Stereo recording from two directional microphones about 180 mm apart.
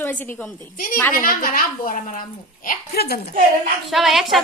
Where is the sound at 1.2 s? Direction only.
50° left (ahead or behind).